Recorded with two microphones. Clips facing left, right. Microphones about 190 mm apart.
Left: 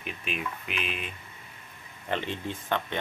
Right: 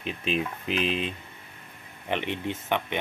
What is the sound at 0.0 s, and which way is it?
Speech, 30° right (ahead or behind).